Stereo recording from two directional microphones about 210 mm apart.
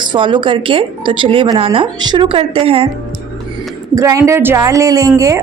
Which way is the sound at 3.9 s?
15° right (ahead or behind).